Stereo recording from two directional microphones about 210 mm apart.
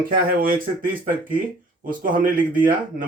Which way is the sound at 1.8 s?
40° right (ahead or behind).